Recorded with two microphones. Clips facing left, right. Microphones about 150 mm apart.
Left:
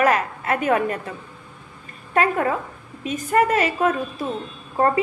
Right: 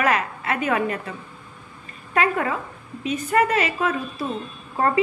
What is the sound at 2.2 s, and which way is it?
A woman's voice, 40° left (ahead or behind).